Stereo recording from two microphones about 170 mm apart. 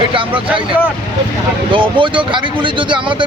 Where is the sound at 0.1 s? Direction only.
30° right (ahead or behind).